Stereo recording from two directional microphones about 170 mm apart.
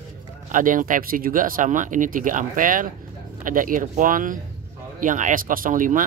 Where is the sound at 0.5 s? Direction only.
50° right (ahead or behind).